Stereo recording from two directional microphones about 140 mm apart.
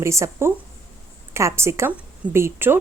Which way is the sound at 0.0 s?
20° right (ahead or behind).